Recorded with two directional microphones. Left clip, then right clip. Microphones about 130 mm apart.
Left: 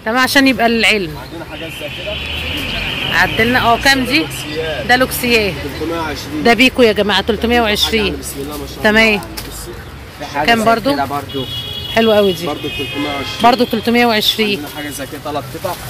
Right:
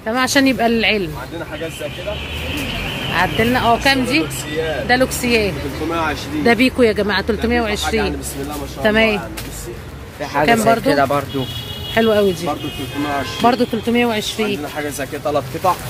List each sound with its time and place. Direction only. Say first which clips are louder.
0.0 s speech: left 4 dB; 15° left (ahead or behind)
3.1 s speech: left 4 dB; 5° left (ahead or behind)
6.4 s speech: left 4 dB; 15° left (ahead or behind)
7.5 s speech: left 7 dB; 25° left (ahead or behind)
10.4 s speech: left 2 dB; 5° left (ahead or behind)
13.8 s speech: left 8 dB; 35° left (ahead or behind)